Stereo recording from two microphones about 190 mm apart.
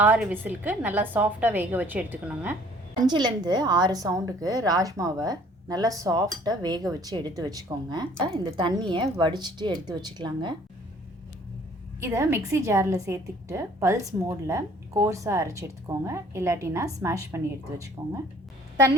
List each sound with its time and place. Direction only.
0.0 s a woman's voice: 10° right (ahead or behind)
3.0 s a woman's voice: 20° right (ahead or behind)
11.9 s a woman's voice: 15° right (ahead or behind)